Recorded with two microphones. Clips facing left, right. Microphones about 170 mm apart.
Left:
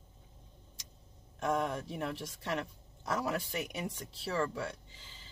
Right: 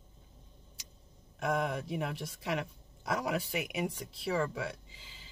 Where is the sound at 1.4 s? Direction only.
10° right (ahead or behind).